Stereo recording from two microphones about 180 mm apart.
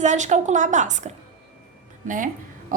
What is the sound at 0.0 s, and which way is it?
A woman's voice, 40° right (ahead or behind).